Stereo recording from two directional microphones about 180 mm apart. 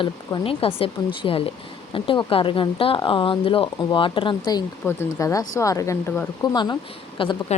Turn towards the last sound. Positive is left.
turn(degrees=30)  # may be behind; listen again after turning